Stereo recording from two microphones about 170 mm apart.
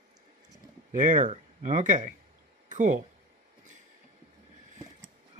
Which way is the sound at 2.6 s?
50° right (ahead or behind).